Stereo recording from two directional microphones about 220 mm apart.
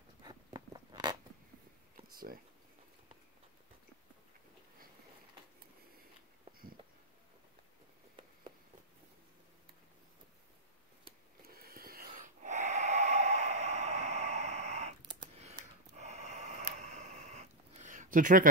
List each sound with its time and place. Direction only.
0.2 s zipper: 20° right (ahead or behind)
2.1 s speech: 40° right (ahead or behind)
11.4 s snort: 45° right (ahead or behind)
16.7 s a sound: 30° right (ahead or behind)